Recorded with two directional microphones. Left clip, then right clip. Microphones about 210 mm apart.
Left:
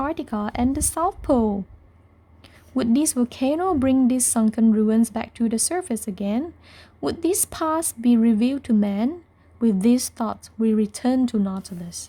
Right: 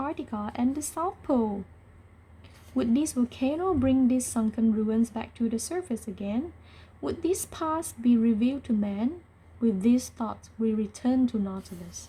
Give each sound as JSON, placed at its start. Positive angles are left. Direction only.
{"t": 0.0, "sound": "speech", "side_deg": 55}
{"t": 2.7, "sound": "speech", "side_deg": 55}